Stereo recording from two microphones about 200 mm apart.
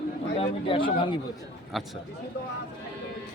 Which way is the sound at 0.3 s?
25° left (ahead or behind).